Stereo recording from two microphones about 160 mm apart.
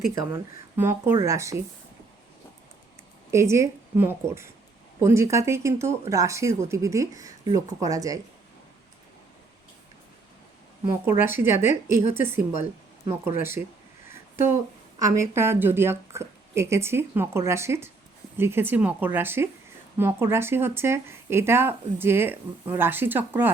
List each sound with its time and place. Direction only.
0.1 s speech: 25° right (ahead or behind)
3.3 s speech: 15° right (ahead or behind)
11.2 s speech: 15° right (ahead or behind)